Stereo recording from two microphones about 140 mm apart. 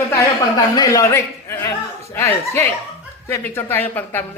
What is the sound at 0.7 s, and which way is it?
A man's voice, 25° left (ahead or behind).